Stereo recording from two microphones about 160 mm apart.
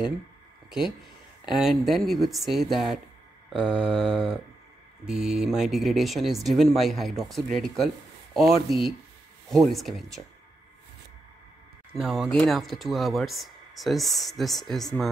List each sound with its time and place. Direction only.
0.7 s speech: 5° right (ahead or behind)
12.0 s speech: centre (ahead or behind)